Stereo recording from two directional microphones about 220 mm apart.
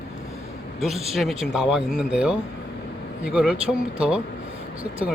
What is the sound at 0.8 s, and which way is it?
A man's voice, centre (ahead or behind).